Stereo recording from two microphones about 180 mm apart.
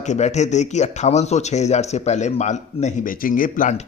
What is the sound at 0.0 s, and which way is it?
A man's voice, 40° left (ahead or behind).